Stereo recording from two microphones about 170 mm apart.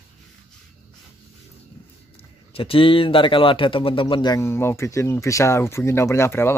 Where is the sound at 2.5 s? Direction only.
30° left (ahead or behind).